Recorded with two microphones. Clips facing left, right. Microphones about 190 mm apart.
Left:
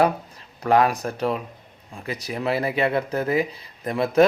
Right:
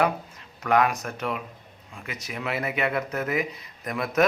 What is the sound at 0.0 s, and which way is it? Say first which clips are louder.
Speech: left 4 dB; 35° left (ahead or behind).